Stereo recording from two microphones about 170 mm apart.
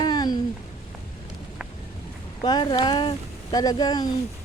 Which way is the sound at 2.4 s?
30° left (ahead or behind).